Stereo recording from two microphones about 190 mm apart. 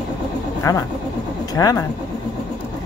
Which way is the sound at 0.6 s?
15° left (ahead or behind).